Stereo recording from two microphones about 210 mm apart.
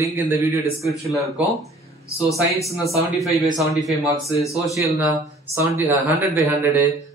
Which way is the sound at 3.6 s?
Centre (ahead or behind).